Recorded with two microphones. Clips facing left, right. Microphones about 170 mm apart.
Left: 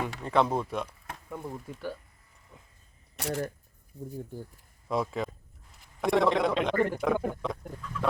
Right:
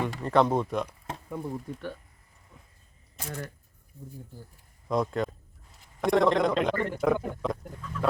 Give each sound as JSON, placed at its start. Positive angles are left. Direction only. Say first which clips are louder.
{"t": 0.0, "sound": "a man's voice", "louder": "right 3 dB", "side_deg": 0}
{"t": 3.2, "sound": "speech", "louder": "left 6 dB", "side_deg": 75}
{"t": 4.9, "sound": "a man's voice", "louder": "right 3 dB", "side_deg": 5}